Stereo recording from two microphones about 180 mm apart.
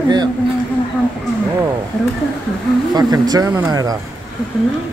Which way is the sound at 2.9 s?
20° right (ahead or behind).